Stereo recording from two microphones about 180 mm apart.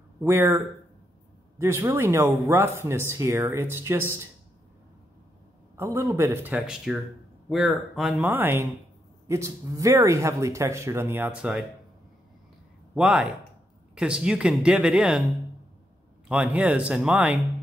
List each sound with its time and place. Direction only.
0.2 s speech: 15° right (ahead or behind)
1.6 s speech: 15° right (ahead or behind)
5.8 s speech: 15° right (ahead or behind)
12.9 s speech: 5° right (ahead or behind)
16.3 s speech: 5° right (ahead or behind)